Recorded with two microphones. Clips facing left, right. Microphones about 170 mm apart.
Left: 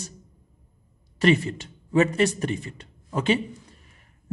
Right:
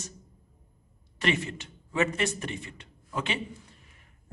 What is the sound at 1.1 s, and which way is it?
A man's voice, 35° left (ahead or behind).